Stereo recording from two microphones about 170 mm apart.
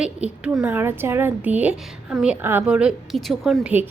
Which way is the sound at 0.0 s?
5° right (ahead or behind).